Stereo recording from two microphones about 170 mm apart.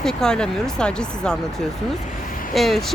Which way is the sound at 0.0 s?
5° left (ahead or behind).